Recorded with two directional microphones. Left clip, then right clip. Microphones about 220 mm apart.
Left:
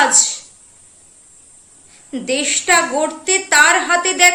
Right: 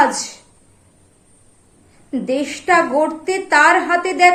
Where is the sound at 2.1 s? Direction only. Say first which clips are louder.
Left 2 dB; 15° left (ahead or behind).